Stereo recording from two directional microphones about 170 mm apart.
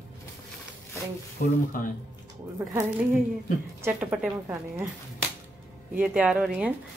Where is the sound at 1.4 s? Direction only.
55° left (ahead or behind).